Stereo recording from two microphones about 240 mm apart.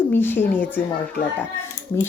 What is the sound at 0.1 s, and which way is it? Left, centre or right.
Speech, centre.